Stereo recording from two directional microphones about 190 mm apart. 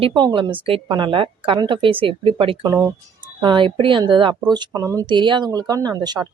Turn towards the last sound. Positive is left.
turn(degrees=-20)  # may be behind; listen again after turning